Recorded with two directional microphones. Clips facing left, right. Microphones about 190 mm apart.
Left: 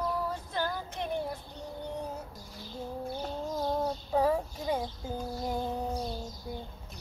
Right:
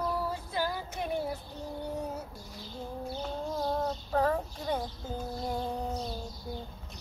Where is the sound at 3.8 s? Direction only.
10° left (ahead or behind).